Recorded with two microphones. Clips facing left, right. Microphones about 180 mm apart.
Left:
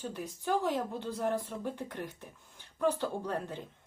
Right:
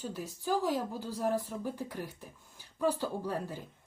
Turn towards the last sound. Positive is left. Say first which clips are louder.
# even
turn(degrees=-5)  # may be behind; listen again after turning